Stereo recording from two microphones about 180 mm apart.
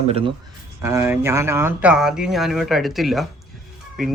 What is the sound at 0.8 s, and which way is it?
Speech, 15° right (ahead or behind).